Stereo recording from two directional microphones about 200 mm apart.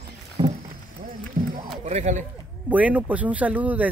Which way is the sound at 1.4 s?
45° right (ahead or behind).